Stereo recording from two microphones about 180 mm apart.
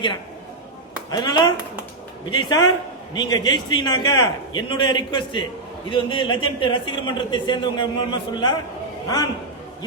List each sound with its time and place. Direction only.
1.1 s a man's voice: 25° left (ahead or behind)